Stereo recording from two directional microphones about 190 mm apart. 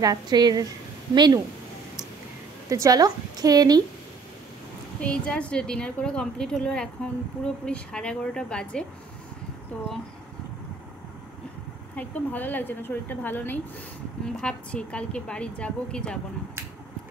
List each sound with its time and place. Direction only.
0.0 s a woman's voice: 20° right (ahead or behind)
2.7 s a woman's voice: 20° right (ahead or behind)
5.0 s a woman's voice: 5° left (ahead or behind)
11.9 s a woman's voice: 10° left (ahead or behind)